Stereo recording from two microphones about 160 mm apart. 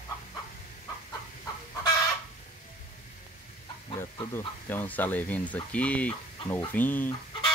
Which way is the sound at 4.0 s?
15° left (ahead or behind).